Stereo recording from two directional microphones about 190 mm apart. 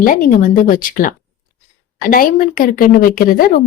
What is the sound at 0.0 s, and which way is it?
Speech, 45° left (ahead or behind).